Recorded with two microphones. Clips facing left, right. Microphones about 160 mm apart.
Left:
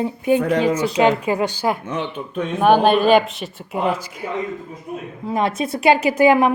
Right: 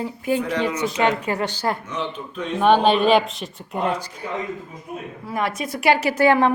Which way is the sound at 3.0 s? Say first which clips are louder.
Left 2 dB; centre (ahead or behind).